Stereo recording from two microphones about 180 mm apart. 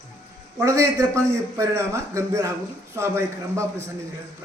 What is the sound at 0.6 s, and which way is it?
A man's voice, 15° right (ahead or behind).